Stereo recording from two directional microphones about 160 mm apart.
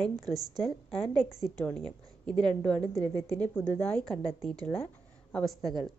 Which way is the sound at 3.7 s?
10° left (ahead or behind).